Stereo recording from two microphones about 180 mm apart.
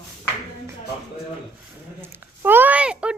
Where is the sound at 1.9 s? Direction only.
10° right (ahead or behind).